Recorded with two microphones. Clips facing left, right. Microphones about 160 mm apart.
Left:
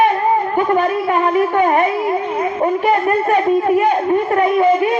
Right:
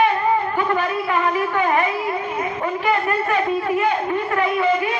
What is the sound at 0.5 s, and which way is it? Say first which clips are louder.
A man's voice: left 6 dB; 45° left (ahead or behind).